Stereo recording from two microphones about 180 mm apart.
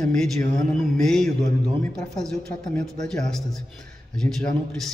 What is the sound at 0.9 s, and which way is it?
A man's voice, 5° left (ahead or behind).